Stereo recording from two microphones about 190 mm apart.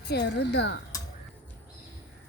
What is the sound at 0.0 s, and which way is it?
Speech, 60° left (ahead or behind).